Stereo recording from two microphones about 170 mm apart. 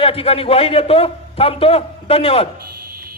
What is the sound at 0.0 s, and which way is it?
A man's voice, 35° left (ahead or behind).